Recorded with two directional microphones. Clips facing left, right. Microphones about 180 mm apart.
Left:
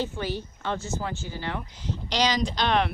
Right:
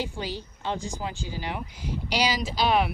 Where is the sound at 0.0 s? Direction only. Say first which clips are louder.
Left 2 dB; 15° right (ahead or behind).